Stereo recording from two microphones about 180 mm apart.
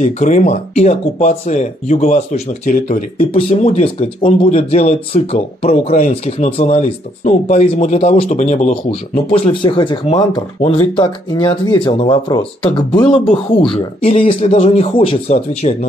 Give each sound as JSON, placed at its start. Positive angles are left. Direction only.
{"t": 0.0, "sound": "speech", "side_deg": 40}
{"t": 13.7, "sound": "speech", "side_deg": 35}